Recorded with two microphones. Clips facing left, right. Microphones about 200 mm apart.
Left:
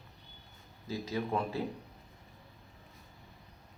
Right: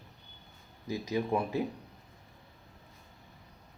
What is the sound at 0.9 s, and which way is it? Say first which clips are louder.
Speech: right 3 dB; 15° right (ahead or behind).